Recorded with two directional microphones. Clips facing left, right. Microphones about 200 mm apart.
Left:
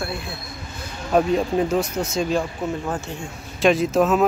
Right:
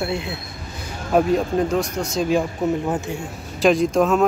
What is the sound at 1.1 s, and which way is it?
Speech, centre (ahead or behind).